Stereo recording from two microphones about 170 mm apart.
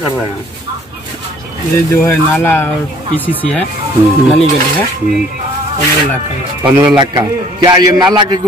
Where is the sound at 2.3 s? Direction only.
10° left (ahead or behind).